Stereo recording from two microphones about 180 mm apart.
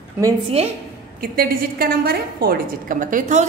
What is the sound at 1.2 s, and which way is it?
A woman's voice, 55° right (ahead or behind).